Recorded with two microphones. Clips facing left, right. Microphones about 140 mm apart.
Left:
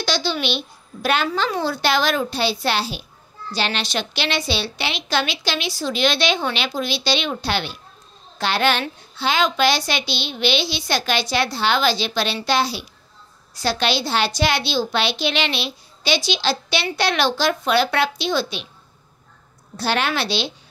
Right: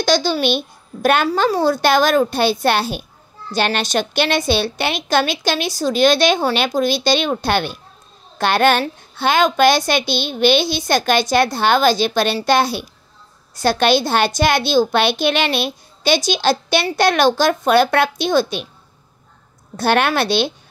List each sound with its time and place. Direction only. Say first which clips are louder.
0.0 s a child's voice: right 6 dB; 45° right (ahead or behind)
19.8 s a child's voice: right 6 dB; 55° right (ahead or behind)